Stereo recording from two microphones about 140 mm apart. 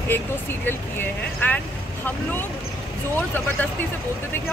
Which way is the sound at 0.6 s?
15° left (ahead or behind).